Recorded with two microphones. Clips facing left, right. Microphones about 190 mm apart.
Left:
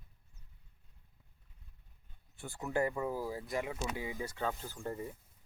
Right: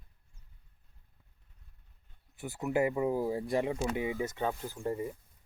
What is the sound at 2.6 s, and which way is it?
Speech, 15° right (ahead or behind).